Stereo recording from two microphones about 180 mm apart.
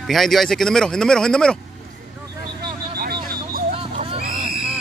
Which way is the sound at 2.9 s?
55° right (ahead or behind).